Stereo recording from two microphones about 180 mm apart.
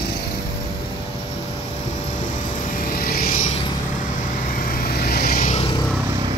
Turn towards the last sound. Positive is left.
turn(degrees=55)  # may be behind; listen again after turning